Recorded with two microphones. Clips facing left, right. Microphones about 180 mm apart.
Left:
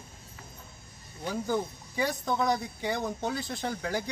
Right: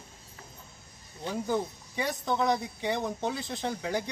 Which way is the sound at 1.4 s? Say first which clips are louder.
Right 1 dB; centre (ahead or behind).